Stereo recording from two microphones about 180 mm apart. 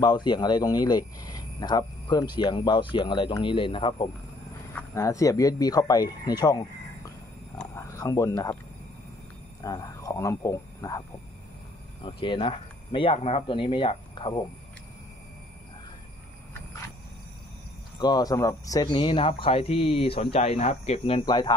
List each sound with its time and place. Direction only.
0.0 s speech: 25° left (ahead or behind)
4.7 s speech: 15° left (ahead or behind)
7.7 s speech: 15° left (ahead or behind)
9.6 s speech: 20° left (ahead or behind)
17.9 s speech: 20° left (ahead or behind)